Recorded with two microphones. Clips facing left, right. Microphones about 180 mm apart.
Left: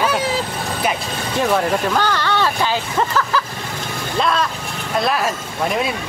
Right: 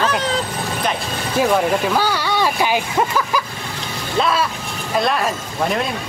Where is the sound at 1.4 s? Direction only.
5° right (ahead or behind).